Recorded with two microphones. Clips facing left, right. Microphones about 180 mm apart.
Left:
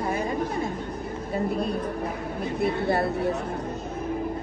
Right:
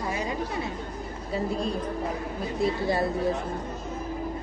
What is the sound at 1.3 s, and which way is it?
Speech, 60° left (ahead or behind).